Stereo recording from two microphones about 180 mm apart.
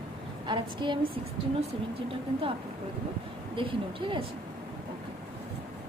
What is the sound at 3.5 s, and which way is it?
Speech, 30° right (ahead or behind).